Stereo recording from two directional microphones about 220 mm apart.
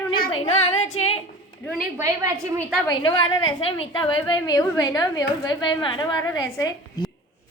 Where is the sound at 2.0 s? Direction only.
15° right (ahead or behind).